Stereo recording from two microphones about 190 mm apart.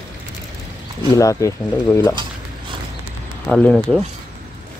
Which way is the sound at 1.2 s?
15° left (ahead or behind).